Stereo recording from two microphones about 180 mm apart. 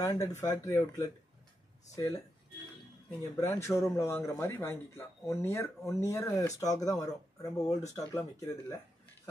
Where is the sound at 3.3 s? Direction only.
15° left (ahead or behind).